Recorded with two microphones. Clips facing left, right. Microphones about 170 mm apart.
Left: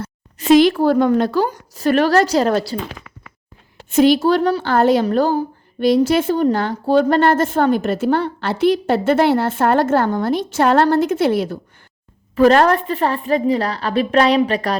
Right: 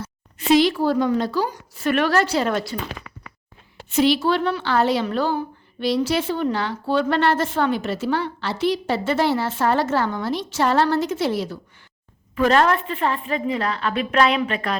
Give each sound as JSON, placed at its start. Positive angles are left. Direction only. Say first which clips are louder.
{"t": 0.3, "sound": "a woman's voice", "louder": "left 5 dB", "side_deg": 50}
{"t": 3.8, "sound": "a woman's voice", "louder": "left 5 dB", "side_deg": 50}
{"t": 12.4, "sound": "a woman's voice", "louder": "left 5 dB", "side_deg": 40}